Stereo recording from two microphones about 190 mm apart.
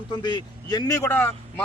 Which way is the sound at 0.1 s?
25° left (ahead or behind).